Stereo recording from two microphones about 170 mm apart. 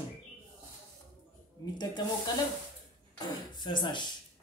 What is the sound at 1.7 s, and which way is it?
A man's voice, 25° left (ahead or behind).